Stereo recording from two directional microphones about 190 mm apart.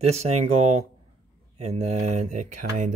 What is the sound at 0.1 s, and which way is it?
Speech, 35° right (ahead or behind).